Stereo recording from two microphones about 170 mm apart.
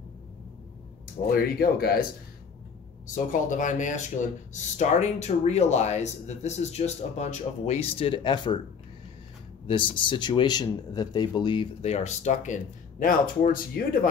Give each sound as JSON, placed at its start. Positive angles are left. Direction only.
{"t": 1.3, "sound": "speech", "side_deg": 65}
{"t": 3.3, "sound": "speech", "side_deg": 50}
{"t": 9.7, "sound": "speech", "side_deg": 30}
{"t": 13.0, "sound": "speech", "side_deg": 55}